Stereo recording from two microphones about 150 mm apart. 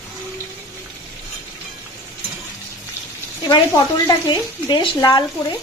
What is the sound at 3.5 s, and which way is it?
Speech, 25° left (ahead or behind).